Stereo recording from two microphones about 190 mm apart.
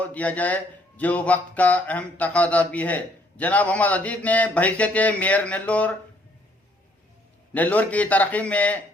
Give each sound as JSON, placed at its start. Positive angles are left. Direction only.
{"t": 0.0, "sound": "speech", "side_deg": 10}
{"t": 7.5, "sound": "speech", "side_deg": 10}